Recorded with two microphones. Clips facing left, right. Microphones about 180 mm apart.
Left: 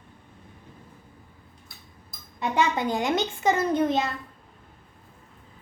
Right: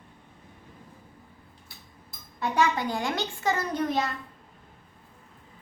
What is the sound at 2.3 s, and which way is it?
A child's voice, 20° left (ahead or behind).